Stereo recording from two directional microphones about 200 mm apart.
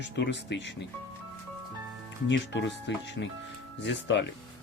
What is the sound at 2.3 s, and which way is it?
Speech, 60° left (ahead or behind).